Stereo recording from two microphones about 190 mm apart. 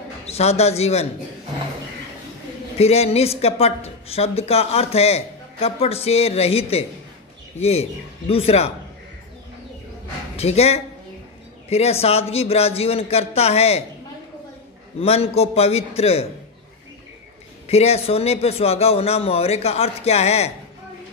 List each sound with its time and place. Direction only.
0.3 s speech: 35° left (ahead or behind)
2.8 s speech: 35° left (ahead or behind)
10.3 s a man's voice: 35° left (ahead or behind)
15.0 s speech: 30° left (ahead or behind)
17.6 s speech: 35° left (ahead or behind)